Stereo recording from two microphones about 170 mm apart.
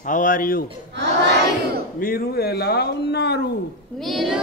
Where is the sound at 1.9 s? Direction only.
60° left (ahead or behind).